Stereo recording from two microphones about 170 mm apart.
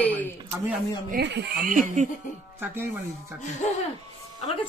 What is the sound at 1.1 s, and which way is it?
Speech, 80° right.